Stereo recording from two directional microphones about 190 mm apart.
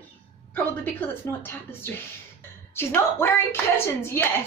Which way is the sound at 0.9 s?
10° left (ahead or behind).